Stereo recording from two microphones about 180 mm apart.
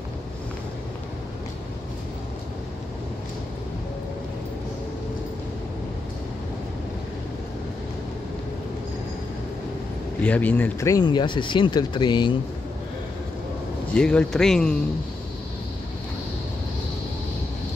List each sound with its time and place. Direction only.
10.2 s speech: 10° left (ahead or behind); by 12.4 s 25° left (ahead or behind)
13.9 s speech: 5° left (ahead or behind)